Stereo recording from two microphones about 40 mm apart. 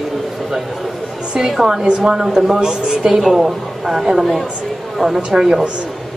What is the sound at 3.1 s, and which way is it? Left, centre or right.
A woman's voice, centre.